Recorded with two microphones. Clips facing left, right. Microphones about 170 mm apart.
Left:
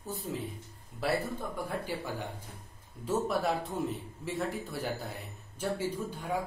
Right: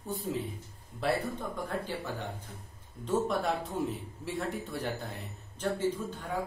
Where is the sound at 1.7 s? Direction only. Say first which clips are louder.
Even; 10° left (ahead or behind).